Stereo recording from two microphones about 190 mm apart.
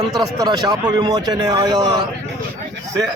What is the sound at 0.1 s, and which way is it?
Speech, 20° right (ahead or behind).